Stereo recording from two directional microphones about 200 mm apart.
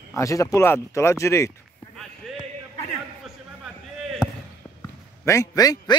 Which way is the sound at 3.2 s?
Centre (ahead or behind).